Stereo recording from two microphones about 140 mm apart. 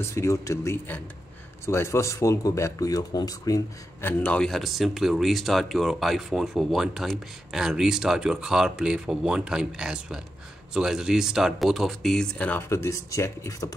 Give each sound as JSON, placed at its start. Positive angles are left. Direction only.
{"t": 0.0, "sound": "speech", "side_deg": 20}
{"t": 4.2, "sound": "speech", "side_deg": 5}